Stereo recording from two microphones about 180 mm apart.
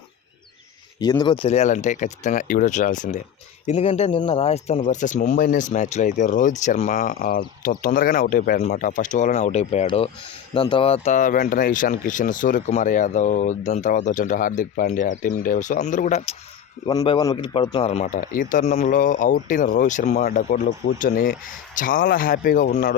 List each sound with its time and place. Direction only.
0.9 s speech: 25° left (ahead or behind); by 8.6 s 55° left (ahead or behind)
8.6 s speech: 45° left (ahead or behind)
16.8 s speech: 20° left (ahead or behind); by 20.2 s 40° left (ahead or behind)
20.2 s speech: 50° left (ahead or behind)